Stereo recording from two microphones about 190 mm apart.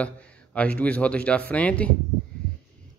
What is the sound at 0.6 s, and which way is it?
Speech, 5° left (ahead or behind).